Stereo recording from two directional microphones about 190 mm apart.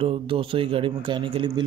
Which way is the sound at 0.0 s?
30° right (ahead or behind).